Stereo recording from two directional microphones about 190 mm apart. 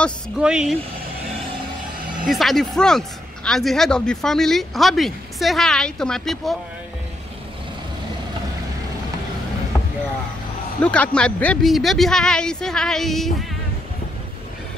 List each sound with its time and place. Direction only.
0.0 s speech: 5° right (ahead or behind)
2.2 s speech: centre (ahead or behind)
10.8 s speech: 5° left (ahead or behind)